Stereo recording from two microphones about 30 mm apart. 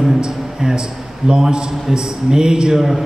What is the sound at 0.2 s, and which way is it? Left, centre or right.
A man's voice, right.